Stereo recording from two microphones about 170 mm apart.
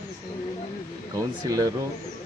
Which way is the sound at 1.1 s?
20° right (ahead or behind).